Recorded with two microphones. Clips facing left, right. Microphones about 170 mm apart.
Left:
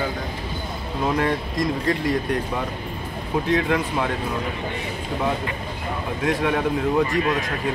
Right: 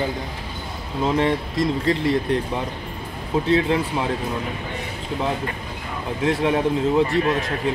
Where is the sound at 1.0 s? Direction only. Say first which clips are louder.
Right 2 dB; 25° right (ahead or behind).